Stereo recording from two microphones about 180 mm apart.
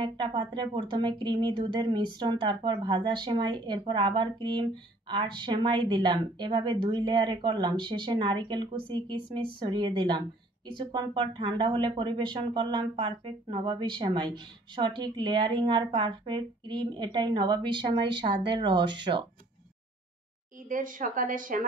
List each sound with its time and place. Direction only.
0.0 s speech: 25° right (ahead or behind)
20.6 s speech: 50° right (ahead or behind)